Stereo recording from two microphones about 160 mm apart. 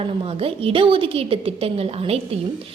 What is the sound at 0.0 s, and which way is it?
A woman's voice, 35° right (ahead or behind).